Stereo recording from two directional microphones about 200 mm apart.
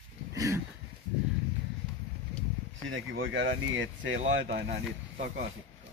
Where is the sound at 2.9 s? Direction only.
80° right.